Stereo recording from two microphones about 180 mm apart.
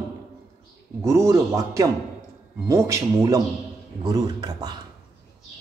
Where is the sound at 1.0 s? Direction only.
15° right (ahead or behind).